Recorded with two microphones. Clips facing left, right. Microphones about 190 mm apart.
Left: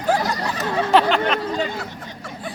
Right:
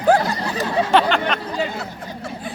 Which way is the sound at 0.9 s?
Centre (ahead or behind).